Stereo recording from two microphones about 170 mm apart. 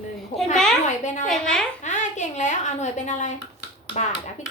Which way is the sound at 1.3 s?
5° left (ahead or behind).